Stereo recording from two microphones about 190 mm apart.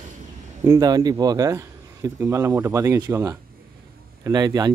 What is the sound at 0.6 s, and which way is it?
A man's voice, 20° right (ahead or behind).